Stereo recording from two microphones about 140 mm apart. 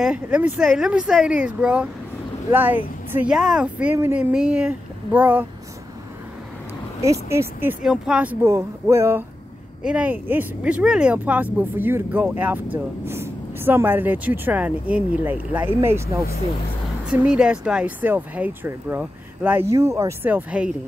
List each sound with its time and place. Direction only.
0.0 s speech: 5° right (ahead or behind)
7.0 s speech: 20° right (ahead or behind)
7.8 s speech: 5° right (ahead or behind)
8.5 s speech: 20° right (ahead or behind)